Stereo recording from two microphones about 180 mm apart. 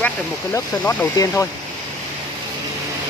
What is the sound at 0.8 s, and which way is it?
Speech, 15° left (ahead or behind).